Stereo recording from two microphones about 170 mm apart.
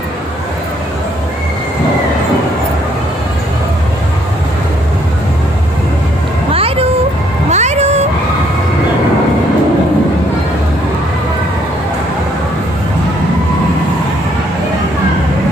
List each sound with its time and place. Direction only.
6.5 s vehicle: 35° right (ahead or behind)
7.4 s meow: 40° right (ahead or behind)